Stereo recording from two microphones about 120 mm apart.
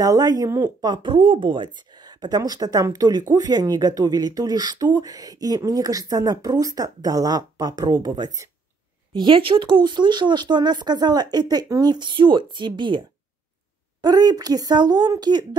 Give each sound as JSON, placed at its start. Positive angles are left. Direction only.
{"t": 0.0, "sound": "speech", "side_deg": -30}
{"t": 0.8, "sound": "speech", "side_deg": -40}
{"t": 9.1, "sound": "speech", "side_deg": -45}
{"t": 14.0, "sound": "speech", "side_deg": -35}